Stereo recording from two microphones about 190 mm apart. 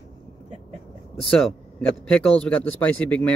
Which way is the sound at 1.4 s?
5° left (ahead or behind).